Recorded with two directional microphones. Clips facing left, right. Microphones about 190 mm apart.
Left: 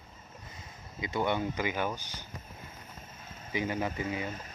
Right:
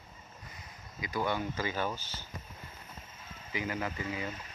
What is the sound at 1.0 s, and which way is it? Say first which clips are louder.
Speech: left 3 dB; 25° left (ahead or behind).